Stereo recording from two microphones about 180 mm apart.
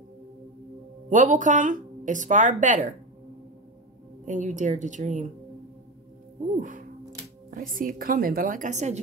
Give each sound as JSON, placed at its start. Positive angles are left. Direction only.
{"t": 1.1, "sound": "speech", "side_deg": -45}
{"t": 4.3, "sound": "speech", "side_deg": -45}
{"t": 6.5, "sound": "speech", "side_deg": -45}